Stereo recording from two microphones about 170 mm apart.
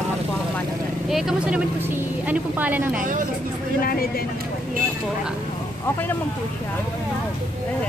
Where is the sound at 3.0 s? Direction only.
50° right (ahead or behind).